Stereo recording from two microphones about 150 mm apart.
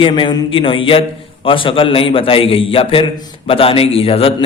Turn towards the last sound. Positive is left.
turn(degrees=40)  # may be behind; listen again after turning